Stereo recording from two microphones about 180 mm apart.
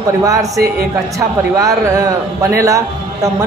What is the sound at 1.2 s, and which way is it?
A man's voice, 20° right (ahead or behind).